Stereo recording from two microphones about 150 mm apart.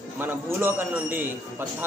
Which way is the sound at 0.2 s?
15° right (ahead or behind).